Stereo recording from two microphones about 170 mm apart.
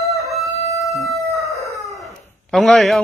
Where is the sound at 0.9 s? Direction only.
Centre (ahead or behind).